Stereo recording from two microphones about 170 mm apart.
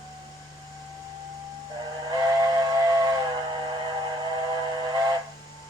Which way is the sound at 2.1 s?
20° right (ahead or behind).